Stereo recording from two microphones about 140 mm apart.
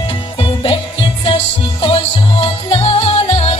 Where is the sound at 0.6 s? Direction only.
40° left (ahead or behind).